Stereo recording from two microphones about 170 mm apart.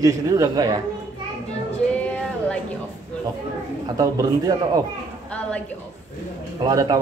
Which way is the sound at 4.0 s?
20° right (ahead or behind).